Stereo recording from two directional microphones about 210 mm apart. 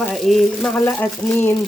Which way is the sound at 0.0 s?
Centre (ahead or behind).